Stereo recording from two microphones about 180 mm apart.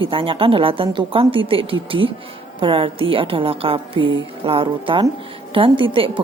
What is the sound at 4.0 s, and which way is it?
Mantra, 90° right.